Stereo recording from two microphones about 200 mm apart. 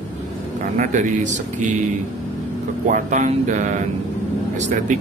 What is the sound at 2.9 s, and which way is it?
Speech, 40° right (ahead or behind).